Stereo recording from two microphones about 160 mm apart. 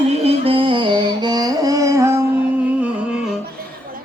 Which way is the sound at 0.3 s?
35° right (ahead or behind).